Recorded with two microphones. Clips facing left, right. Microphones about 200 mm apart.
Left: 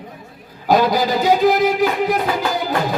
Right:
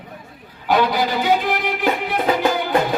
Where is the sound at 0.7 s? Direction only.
40° left (ahead or behind).